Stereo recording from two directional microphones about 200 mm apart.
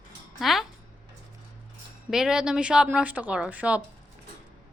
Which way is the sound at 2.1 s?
Centre (ahead or behind).